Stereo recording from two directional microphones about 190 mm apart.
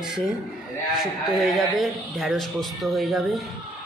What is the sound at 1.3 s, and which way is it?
Speech, centre (ahead or behind).